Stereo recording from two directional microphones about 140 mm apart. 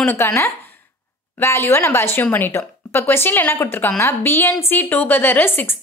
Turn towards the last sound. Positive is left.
turn(degrees=15)  # may be behind; listen again after turning